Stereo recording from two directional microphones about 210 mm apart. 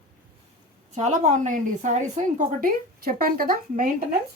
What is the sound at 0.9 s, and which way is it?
A woman's voice, 35° right (ahead or behind).